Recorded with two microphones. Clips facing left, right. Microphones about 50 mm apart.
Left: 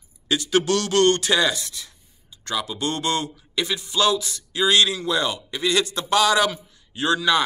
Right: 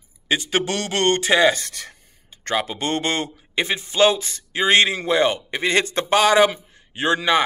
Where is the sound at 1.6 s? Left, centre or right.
Right.